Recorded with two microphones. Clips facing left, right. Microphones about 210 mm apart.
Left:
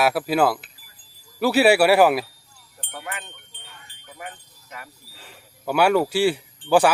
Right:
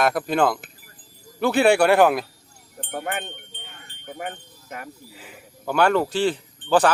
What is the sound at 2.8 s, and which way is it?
Wind chime, 45° right (ahead or behind).